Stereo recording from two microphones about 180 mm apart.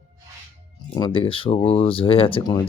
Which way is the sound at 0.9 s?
25° left (ahead or behind).